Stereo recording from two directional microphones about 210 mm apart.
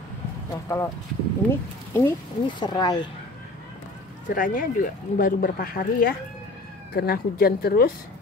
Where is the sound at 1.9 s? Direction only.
15° left (ahead or behind).